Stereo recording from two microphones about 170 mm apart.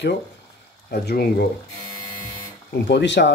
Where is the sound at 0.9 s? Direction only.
70° left (ahead or behind).